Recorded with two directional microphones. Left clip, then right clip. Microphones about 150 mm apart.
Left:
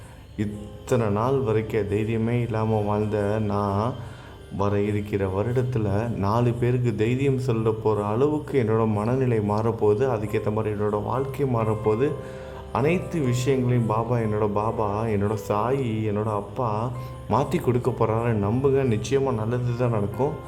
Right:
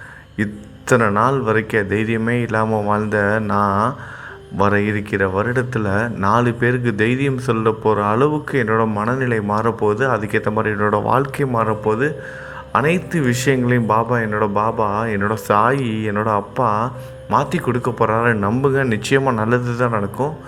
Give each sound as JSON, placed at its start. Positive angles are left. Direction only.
{"t": 0.3, "sound": "a man's voice", "side_deg": -10}
{"t": 17.2, "sound": "speech", "side_deg": 10}
{"t": 18.0, "sound": "a man's voice", "side_deg": 0}